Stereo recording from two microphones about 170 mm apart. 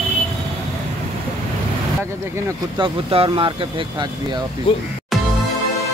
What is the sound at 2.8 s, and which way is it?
Speech, 30° right (ahead or behind).